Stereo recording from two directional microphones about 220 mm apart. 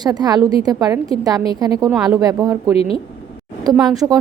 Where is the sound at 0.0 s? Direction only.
20° right (ahead or behind).